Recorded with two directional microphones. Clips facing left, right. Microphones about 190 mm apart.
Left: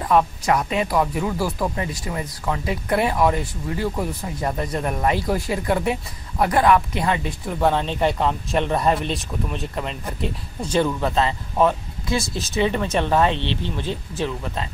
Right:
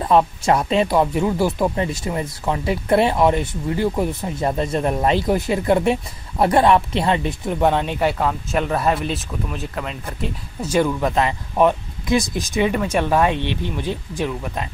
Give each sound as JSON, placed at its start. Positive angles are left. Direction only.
{"t": 0.0, "sound": "speech", "side_deg": -25}